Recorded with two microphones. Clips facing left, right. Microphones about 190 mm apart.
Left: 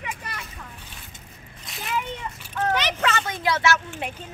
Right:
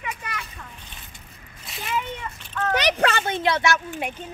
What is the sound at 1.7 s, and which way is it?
Speech, centre (ahead or behind).